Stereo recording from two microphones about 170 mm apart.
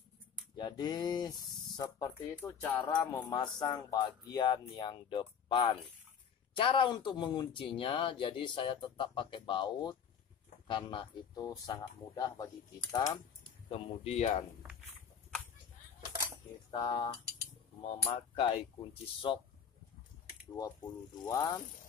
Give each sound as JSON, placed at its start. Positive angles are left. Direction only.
{"t": 0.6, "sound": "speech", "side_deg": 25}
{"t": 2.3, "sound": "speech", "side_deg": 10}
{"t": 2.8, "sound": "speech", "side_deg": 25}
{"t": 13.7, "sound": "speech", "side_deg": 35}
{"t": 16.7, "sound": "speech", "side_deg": 25}
{"t": 20.5, "sound": "speech", "side_deg": 20}